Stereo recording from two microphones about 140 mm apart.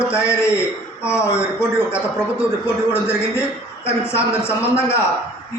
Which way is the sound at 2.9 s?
20° left (ahead or behind).